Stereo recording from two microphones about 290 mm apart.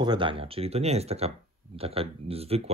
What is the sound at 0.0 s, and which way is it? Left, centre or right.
Speech, centre.